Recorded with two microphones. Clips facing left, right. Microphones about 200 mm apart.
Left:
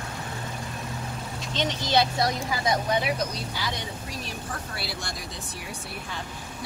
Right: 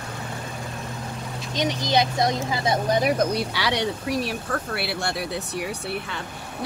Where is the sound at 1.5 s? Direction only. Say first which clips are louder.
Right 3 dB; 10° right (ahead or behind); by 3.0 s 25° right (ahead or behind).